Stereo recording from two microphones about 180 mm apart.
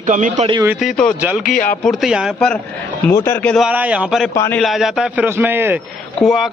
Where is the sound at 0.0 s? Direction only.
45° right (ahead or behind).